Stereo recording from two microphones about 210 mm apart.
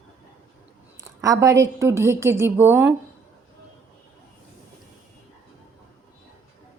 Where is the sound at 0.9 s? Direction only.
15° right (ahead or behind).